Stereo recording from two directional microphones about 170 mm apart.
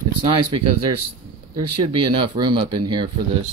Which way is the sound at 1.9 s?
25° right (ahead or behind).